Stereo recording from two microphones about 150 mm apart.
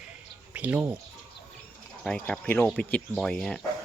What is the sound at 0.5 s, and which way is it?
Speech, 10° right (ahead or behind).